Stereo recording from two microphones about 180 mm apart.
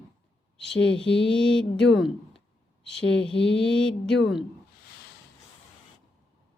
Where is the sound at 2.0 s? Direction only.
Centre (ahead or behind).